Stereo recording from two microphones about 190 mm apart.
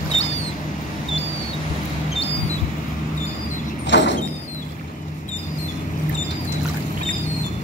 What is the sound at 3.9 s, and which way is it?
Vehicle, 70° left (ahead or behind).